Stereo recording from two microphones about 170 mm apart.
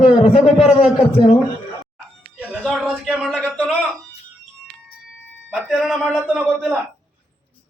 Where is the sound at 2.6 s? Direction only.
Centre (ahead or behind).